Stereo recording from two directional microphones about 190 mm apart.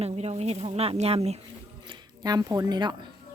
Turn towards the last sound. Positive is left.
turn(degrees=-25)  # may be behind; listen again after turning